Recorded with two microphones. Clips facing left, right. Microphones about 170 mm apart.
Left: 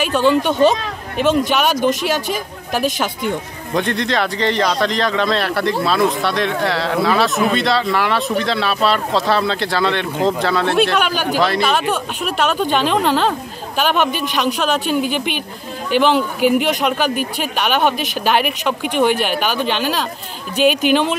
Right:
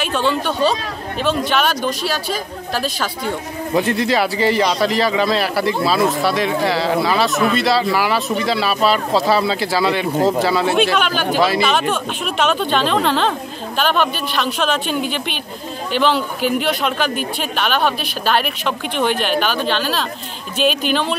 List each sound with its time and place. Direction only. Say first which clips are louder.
0.1 s speech: left 5 dB; 15° left (ahead or behind)
3.7 s speech: right 2 dB; 5° right (ahead or behind)
11.0 s speech: even; 10° left (ahead or behind)
11.3 s speech: right 1 dB; centre (ahead or behind); by 21.2 s 15° left (ahead or behind)